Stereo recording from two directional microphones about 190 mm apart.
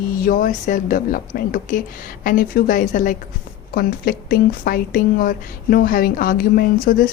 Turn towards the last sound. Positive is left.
turn(degrees=50)  # may be behind; listen again after turning